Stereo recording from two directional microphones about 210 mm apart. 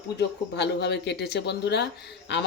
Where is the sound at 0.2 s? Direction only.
55° left (ahead or behind).